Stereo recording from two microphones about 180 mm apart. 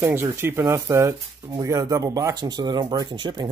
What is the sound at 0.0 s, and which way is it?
Speech, 15° right (ahead or behind).